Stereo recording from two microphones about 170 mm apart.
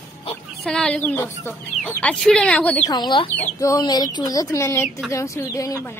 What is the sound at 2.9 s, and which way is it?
A woman's voice, 25° left (ahead or behind).